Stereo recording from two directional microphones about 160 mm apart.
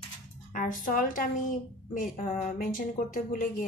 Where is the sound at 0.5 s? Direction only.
55° left (ahead or behind).